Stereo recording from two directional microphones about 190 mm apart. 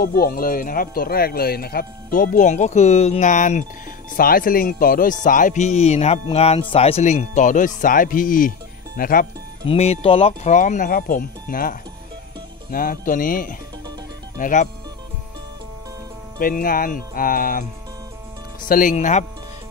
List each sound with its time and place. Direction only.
0.0 s speech: 50° left (ahead or behind)
9.7 s speech: 30° left (ahead or behind); by 11.7 s 45° left (ahead or behind)
12.7 s speech: 50° left (ahead or behind)
16.3 s speech: 50° left (ahead or behind)
18.7 s speech: 45° left (ahead or behind)